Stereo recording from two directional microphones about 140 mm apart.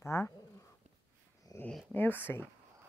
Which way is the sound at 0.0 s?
20° left (ahead or behind).